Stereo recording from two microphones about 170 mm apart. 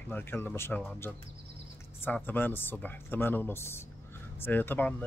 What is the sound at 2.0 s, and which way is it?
Speech, 10° left (ahead or behind).